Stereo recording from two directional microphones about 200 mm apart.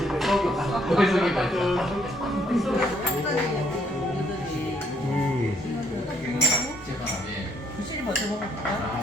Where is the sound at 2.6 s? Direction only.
Centre (ahead or behind).